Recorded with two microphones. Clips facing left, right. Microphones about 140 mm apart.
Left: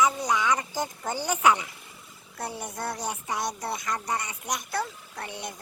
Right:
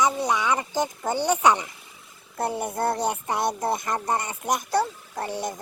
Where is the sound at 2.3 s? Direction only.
55° right (ahead or behind).